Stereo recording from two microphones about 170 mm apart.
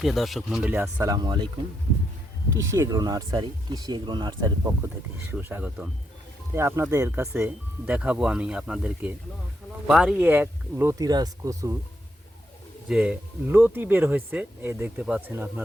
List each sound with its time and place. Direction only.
0.0 s speech: centre (ahead or behind)
1.1 s speech: 25° right (ahead or behind)
2.6 s speech: 20° right (ahead or behind)
5.3 s speech: 10° right (ahead or behind)
12.9 s speech: 10° right (ahead or behind)